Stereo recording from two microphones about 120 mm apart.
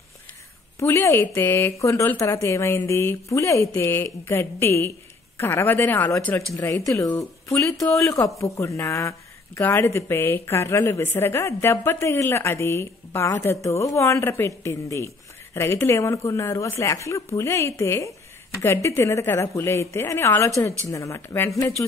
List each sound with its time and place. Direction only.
0.7 s a woman's voice: 25° left (ahead or behind)